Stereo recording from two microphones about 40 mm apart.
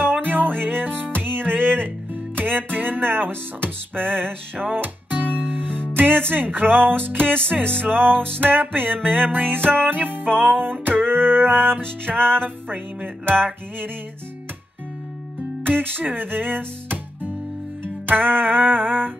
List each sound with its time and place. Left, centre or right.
0.0 s music: right
5.9 s speech: right
6.3 s music: right
15.6 s music: right